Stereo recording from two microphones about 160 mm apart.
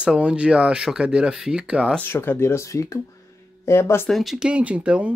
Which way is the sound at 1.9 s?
15° left (ahead or behind).